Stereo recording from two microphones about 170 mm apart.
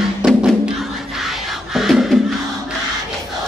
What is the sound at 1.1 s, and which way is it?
Beatboxing, centre (ahead or behind).